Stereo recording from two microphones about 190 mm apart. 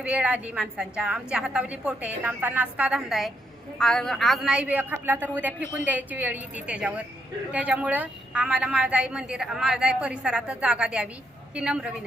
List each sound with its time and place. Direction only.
0.0 s a woman's voice: 5° right (ahead or behind)